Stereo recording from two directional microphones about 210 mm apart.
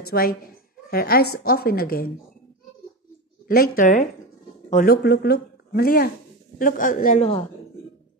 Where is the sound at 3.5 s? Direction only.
45° left (ahead or behind).